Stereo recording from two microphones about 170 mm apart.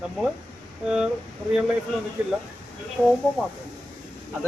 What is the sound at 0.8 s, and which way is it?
Speech, 5° right (ahead or behind).